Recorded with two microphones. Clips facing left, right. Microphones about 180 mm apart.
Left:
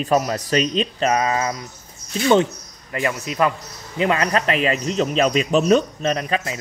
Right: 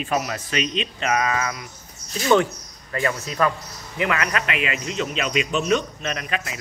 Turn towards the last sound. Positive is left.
turn(degrees=35)  # may be behind; listen again after turning